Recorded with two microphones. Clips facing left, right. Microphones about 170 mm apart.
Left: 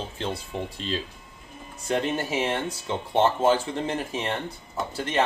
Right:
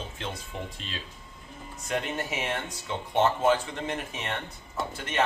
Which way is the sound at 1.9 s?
30° left (ahead or behind).